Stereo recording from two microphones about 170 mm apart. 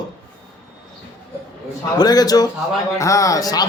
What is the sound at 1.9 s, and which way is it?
Speech, 25° left (ahead or behind).